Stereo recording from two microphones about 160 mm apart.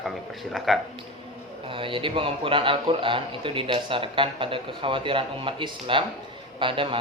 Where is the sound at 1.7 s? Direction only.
30° right (ahead or behind).